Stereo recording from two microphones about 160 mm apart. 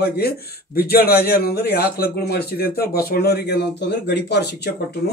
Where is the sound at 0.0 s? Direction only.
75° left (ahead or behind).